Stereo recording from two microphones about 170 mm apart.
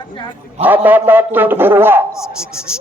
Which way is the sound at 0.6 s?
10° right (ahead or behind).